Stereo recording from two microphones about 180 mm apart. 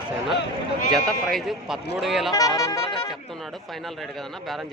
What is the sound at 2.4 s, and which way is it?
Speech, 20° left (ahead or behind).